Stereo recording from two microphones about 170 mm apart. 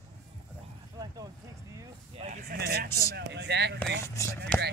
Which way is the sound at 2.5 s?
65° right (ahead or behind).